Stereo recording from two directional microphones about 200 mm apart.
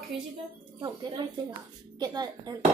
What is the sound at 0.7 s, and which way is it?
A woman's voice, 20° right (ahead or behind).